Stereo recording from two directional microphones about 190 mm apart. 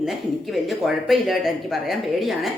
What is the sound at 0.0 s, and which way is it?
Speech, centre (ahead or behind).